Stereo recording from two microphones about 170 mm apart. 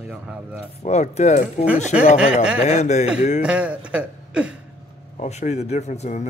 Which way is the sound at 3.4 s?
5° right (ahead or behind).